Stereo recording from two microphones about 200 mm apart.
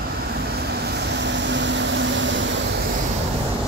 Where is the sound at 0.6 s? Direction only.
60° right (ahead or behind).